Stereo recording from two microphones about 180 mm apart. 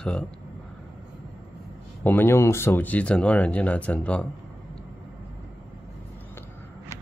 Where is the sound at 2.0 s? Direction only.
10° left (ahead or behind).